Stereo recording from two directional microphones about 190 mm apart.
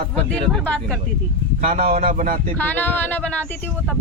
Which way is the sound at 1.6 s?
50° right (ahead or behind).